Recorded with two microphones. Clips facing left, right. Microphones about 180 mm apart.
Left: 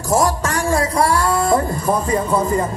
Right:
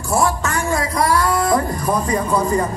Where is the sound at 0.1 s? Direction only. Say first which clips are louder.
Left 1 dB; 35° left (ahead or behind).